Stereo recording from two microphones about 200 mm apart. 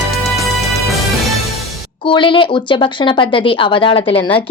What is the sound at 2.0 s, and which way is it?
Speech, 25° left (ahead or behind).